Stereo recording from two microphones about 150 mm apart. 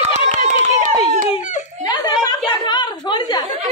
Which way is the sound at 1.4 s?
55° left (ahead or behind).